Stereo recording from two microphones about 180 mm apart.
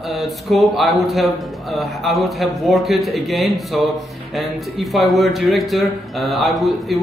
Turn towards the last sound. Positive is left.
turn(degrees=0)  # may be behind; listen again after turning